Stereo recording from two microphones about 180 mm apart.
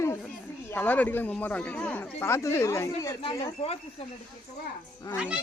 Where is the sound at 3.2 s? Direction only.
30° left (ahead or behind).